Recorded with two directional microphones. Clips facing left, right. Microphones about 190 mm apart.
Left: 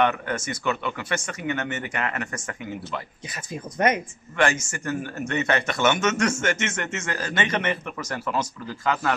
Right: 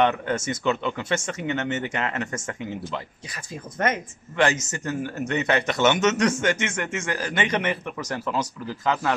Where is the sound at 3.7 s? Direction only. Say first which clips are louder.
Left 3 dB; 15° left (ahead or behind).